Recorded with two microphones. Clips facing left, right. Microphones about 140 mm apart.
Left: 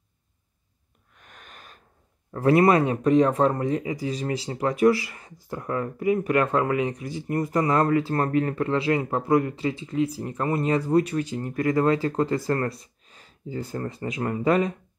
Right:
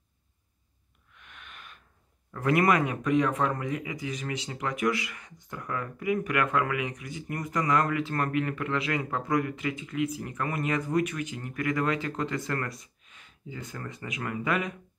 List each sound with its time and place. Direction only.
1.1 s snort: 40° left (ahead or behind)
2.3 s speech: 30° left (ahead or behind)